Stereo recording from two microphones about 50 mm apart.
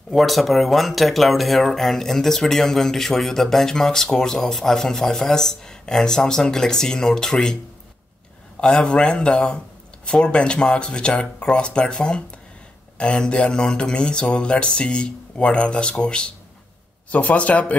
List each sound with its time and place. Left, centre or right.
0.1 s speech: centre
8.5 s speech: centre